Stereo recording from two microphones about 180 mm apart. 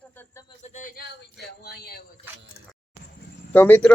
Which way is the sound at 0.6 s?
45° left (ahead or behind).